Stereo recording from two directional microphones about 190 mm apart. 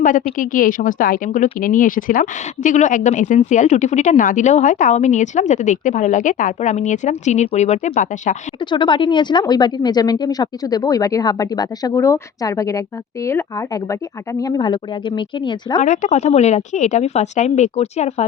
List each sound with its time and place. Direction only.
0.3 s a woman's voice: 45° left (ahead or behind)
8.7 s speech: 25° left (ahead or behind)
14.4 s speech: 20° left (ahead or behind)
15.8 s a woman's voice: 40° left (ahead or behind)